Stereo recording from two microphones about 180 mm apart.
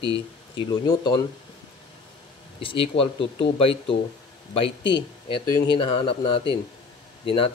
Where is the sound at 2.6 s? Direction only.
30° left (ahead or behind).